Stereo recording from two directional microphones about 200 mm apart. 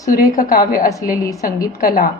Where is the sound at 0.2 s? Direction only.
45° left (ahead or behind).